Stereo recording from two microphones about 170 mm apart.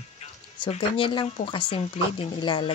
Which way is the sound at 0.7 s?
30° left (ahead or behind).